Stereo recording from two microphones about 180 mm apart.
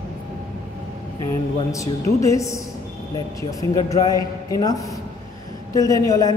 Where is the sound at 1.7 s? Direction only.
15° left (ahead or behind).